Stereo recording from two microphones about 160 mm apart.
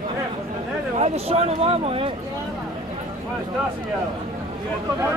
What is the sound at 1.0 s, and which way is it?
Speech, 40° right (ahead or behind).